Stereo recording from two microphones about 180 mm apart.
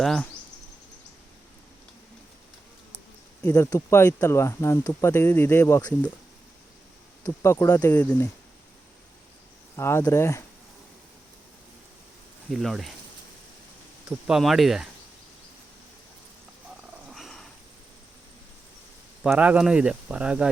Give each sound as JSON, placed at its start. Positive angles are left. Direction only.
{"t": 0.0, "sound": "speech", "side_deg": 5}
{"t": 3.4, "sound": "speech", "side_deg": 15}
{"t": 7.3, "sound": "speech", "side_deg": 15}
{"t": 9.7, "sound": "speech", "side_deg": 15}
{"t": 12.5, "sound": "speech", "side_deg": 0}
{"t": 14.1, "sound": "speech", "side_deg": 0}
{"t": 17.1, "sound": "dog", "side_deg": 0}
{"t": 19.2, "sound": "speech", "side_deg": -5}